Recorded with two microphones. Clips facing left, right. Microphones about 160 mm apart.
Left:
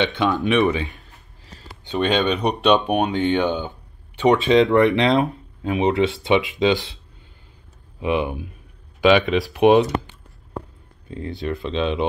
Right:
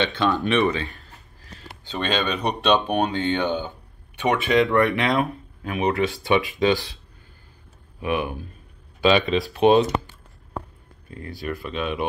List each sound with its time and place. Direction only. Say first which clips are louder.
0.0 s speech: left 2 dB; 15° left (ahead or behind)
0.3 s speech: left 2 dB; centre (ahead or behind)
0.6 s speech: left 2 dB; 15° left (ahead or behind)
8.0 s speech: left 3 dB; 20° left (ahead or behind)
11.1 s speech: left 4 dB; 25° left (ahead or behind)